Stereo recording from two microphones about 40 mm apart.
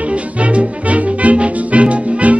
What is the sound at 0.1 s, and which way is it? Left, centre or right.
Music, right.